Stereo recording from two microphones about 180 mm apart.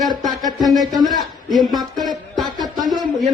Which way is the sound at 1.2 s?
Centre (ahead or behind).